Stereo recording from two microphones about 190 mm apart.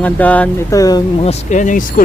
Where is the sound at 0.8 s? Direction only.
20° left (ahead or behind).